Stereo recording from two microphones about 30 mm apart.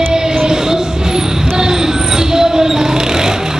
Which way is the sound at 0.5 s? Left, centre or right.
Right.